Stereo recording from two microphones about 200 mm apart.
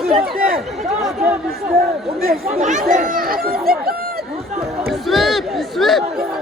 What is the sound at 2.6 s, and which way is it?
Speech, 35° right (ahead or behind).